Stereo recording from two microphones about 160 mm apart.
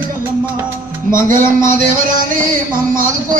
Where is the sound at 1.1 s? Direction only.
60° right (ahead or behind).